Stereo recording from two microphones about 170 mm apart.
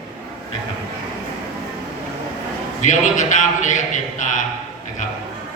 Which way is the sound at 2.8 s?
45° left (ahead or behind).